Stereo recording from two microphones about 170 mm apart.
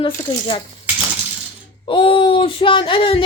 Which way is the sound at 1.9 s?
30° left (ahead or behind).